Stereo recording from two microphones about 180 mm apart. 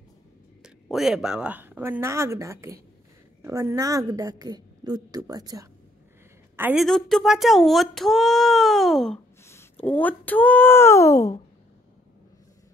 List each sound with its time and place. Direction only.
0.6 s a woman's voice: centre (ahead or behind)
6.8 s speech: centre (ahead or behind)
9.4 s speech: 15° left (ahead or behind)